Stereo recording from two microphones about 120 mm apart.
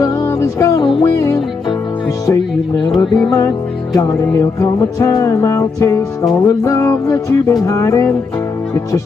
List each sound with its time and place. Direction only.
0.0 s music: 25° left (ahead or behind)
3.2 s music: 30° left (ahead or behind)